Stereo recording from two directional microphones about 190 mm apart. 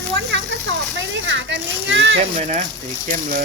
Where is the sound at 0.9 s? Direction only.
75° right (ahead or behind).